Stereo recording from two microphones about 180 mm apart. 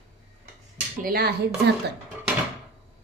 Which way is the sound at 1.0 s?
55° right (ahead or behind).